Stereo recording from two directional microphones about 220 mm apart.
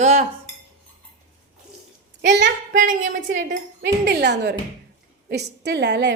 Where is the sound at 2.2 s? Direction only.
55° right (ahead or behind).